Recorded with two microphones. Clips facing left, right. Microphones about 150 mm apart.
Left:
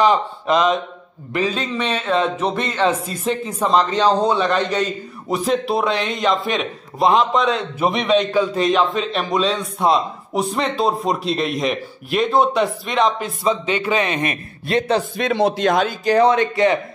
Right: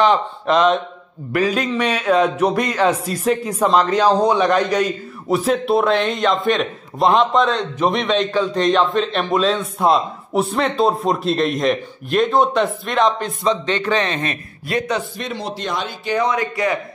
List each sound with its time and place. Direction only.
0.0 s a man's voice: centre (ahead or behind)
1.3 s a man's voice: 10° right (ahead or behind); by 14.4 s 15° left (ahead or behind)
14.7 s speech: 30° left (ahead or behind)
15.2 s speech: 75° left (ahead or behind)
16.1 s speech: 30° left (ahead or behind)